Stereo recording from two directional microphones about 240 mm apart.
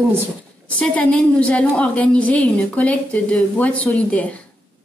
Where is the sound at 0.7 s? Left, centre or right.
Centre.